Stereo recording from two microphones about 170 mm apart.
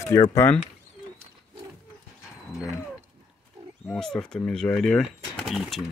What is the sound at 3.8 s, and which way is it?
Speech, 5° left (ahead or behind).